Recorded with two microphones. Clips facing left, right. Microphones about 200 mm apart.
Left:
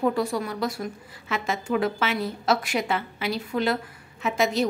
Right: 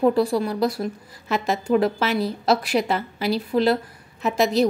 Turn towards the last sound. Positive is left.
turn(degrees=-35)  # may be behind; listen again after turning